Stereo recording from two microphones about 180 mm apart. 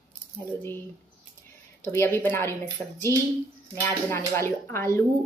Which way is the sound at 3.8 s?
15° left (ahead or behind).